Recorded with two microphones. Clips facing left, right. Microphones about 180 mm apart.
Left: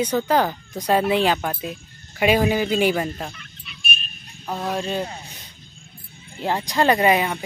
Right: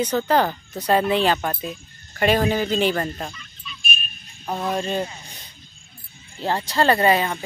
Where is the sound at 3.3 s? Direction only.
65° left (ahead or behind).